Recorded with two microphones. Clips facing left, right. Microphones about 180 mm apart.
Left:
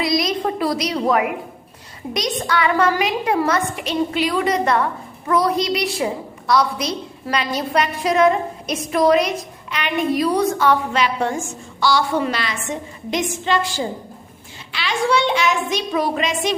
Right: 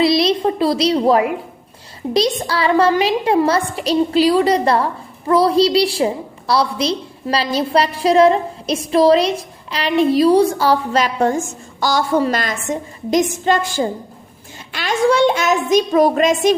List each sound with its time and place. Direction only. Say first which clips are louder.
0.0 s a woman's voice: right 6 dB; 30° right (ahead or behind); by 16.6 s 45° right (ahead or behind)